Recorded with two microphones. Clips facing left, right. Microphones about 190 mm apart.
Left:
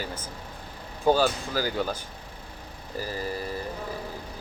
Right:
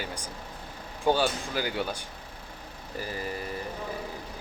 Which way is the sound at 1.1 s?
40° left (ahead or behind).